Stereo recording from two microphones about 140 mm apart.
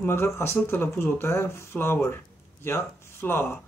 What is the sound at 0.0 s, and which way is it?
Speech, 15° left (ahead or behind).